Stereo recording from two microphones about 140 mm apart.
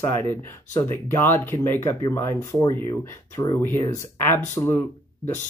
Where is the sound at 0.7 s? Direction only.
15° left (ahead or behind).